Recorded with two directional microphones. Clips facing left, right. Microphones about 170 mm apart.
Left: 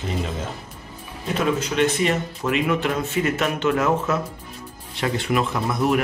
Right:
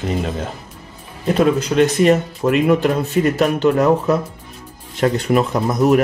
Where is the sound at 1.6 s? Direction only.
40° right (ahead or behind).